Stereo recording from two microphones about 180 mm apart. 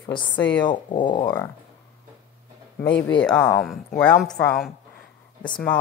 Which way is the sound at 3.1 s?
5° left (ahead or behind).